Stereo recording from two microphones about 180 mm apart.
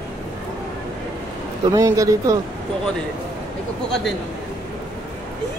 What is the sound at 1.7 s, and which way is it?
Speech, 20° right (ahead or behind).